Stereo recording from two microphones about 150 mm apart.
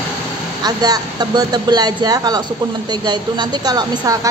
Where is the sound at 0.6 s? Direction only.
25° right (ahead or behind).